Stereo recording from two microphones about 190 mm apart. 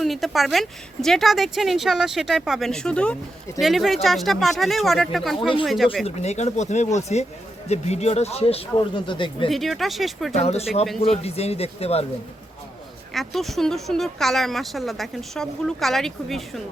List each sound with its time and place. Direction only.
0.0 s speech: centre (ahead or behind)
6.1 s speech: 35° left (ahead or behind)
9.5 s speech: centre (ahead or behind)
10.3 s speech: 35° left (ahead or behind)
13.1 s speech: centre (ahead or behind)